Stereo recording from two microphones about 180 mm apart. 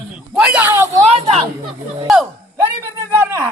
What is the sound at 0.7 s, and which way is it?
Speech, 15° right (ahead or behind).